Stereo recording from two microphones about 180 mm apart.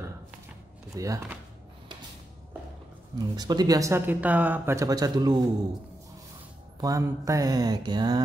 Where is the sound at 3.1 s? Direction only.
20° right (ahead or behind).